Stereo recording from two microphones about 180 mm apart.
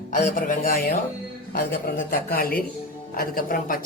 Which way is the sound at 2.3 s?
55° left (ahead or behind).